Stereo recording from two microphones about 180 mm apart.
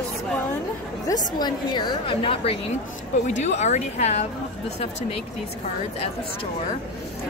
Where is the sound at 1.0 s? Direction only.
20° left (ahead or behind).